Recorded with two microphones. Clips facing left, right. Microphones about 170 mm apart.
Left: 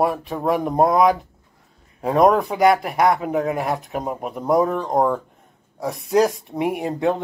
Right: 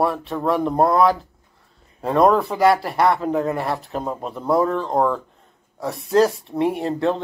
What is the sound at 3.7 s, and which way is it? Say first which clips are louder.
Speech: left 1 dB; 15° left (ahead or behind).